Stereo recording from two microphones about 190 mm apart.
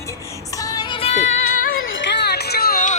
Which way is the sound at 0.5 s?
20° left (ahead or behind).